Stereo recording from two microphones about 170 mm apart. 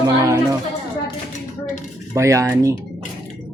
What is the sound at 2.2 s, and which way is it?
Speech, 15° right (ahead or behind).